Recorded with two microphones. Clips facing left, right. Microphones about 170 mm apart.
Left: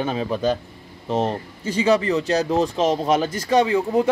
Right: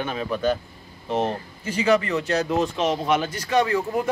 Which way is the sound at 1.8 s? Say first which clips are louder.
Left 2 dB; 30° left (ahead or behind).